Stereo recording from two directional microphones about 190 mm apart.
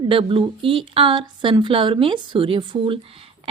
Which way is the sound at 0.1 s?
30° right (ahead or behind).